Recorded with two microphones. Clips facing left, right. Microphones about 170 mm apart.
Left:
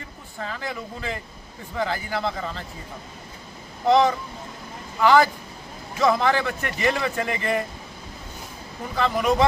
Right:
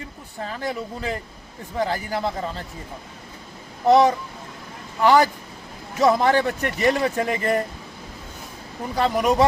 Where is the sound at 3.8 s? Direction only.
40° right (ahead or behind).